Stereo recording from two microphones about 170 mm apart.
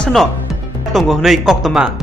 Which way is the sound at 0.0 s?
Centre (ahead or behind).